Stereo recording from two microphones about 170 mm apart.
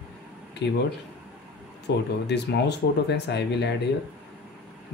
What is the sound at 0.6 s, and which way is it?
Speech, 90° left.